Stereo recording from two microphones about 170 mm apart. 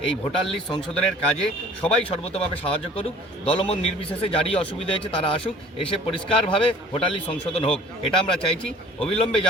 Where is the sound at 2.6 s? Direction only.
35° left (ahead or behind).